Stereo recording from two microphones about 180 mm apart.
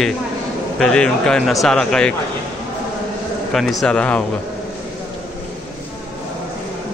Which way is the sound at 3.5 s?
Centre (ahead or behind).